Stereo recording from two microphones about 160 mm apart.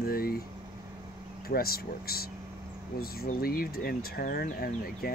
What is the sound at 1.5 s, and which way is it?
Speech, 70° left (ahead or behind).